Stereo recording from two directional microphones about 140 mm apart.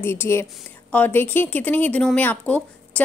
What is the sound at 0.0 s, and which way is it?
A woman's voice, 15° left (ahead or behind).